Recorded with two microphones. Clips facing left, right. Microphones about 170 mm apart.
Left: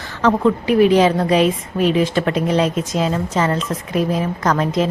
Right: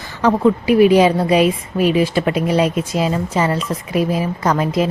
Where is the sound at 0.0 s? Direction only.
10° right (ahead or behind).